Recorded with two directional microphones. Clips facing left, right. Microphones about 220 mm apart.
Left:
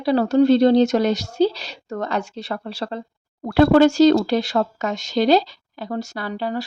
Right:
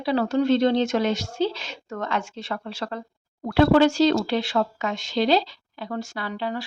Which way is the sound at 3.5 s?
45° left (ahead or behind).